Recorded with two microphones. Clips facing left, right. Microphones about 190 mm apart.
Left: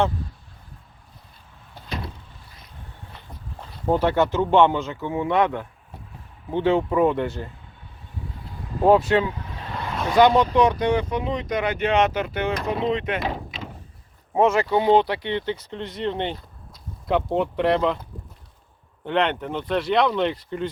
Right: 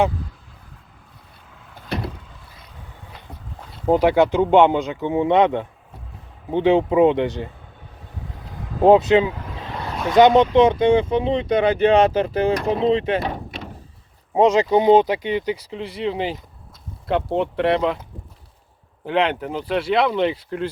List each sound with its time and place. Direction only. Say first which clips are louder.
3.8 s speech: right 4 dB; 15° right (ahead or behind)
8.8 s speech: right 4 dB; 20° right (ahead or behind)
14.3 s speech: right 4 dB; 20° right (ahead or behind); by 18.0 s centre (ahead or behind)
19.0 s speech: right 2 dB; 5° right (ahead or behind)